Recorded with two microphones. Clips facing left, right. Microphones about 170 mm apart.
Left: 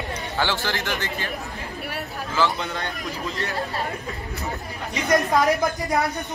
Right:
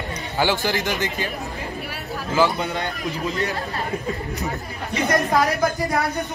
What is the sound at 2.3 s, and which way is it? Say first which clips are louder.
Speech: right 4 dB; 15° right (ahead or behind).